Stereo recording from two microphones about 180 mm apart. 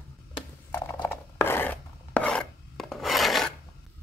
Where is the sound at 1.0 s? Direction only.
15° left (ahead or behind).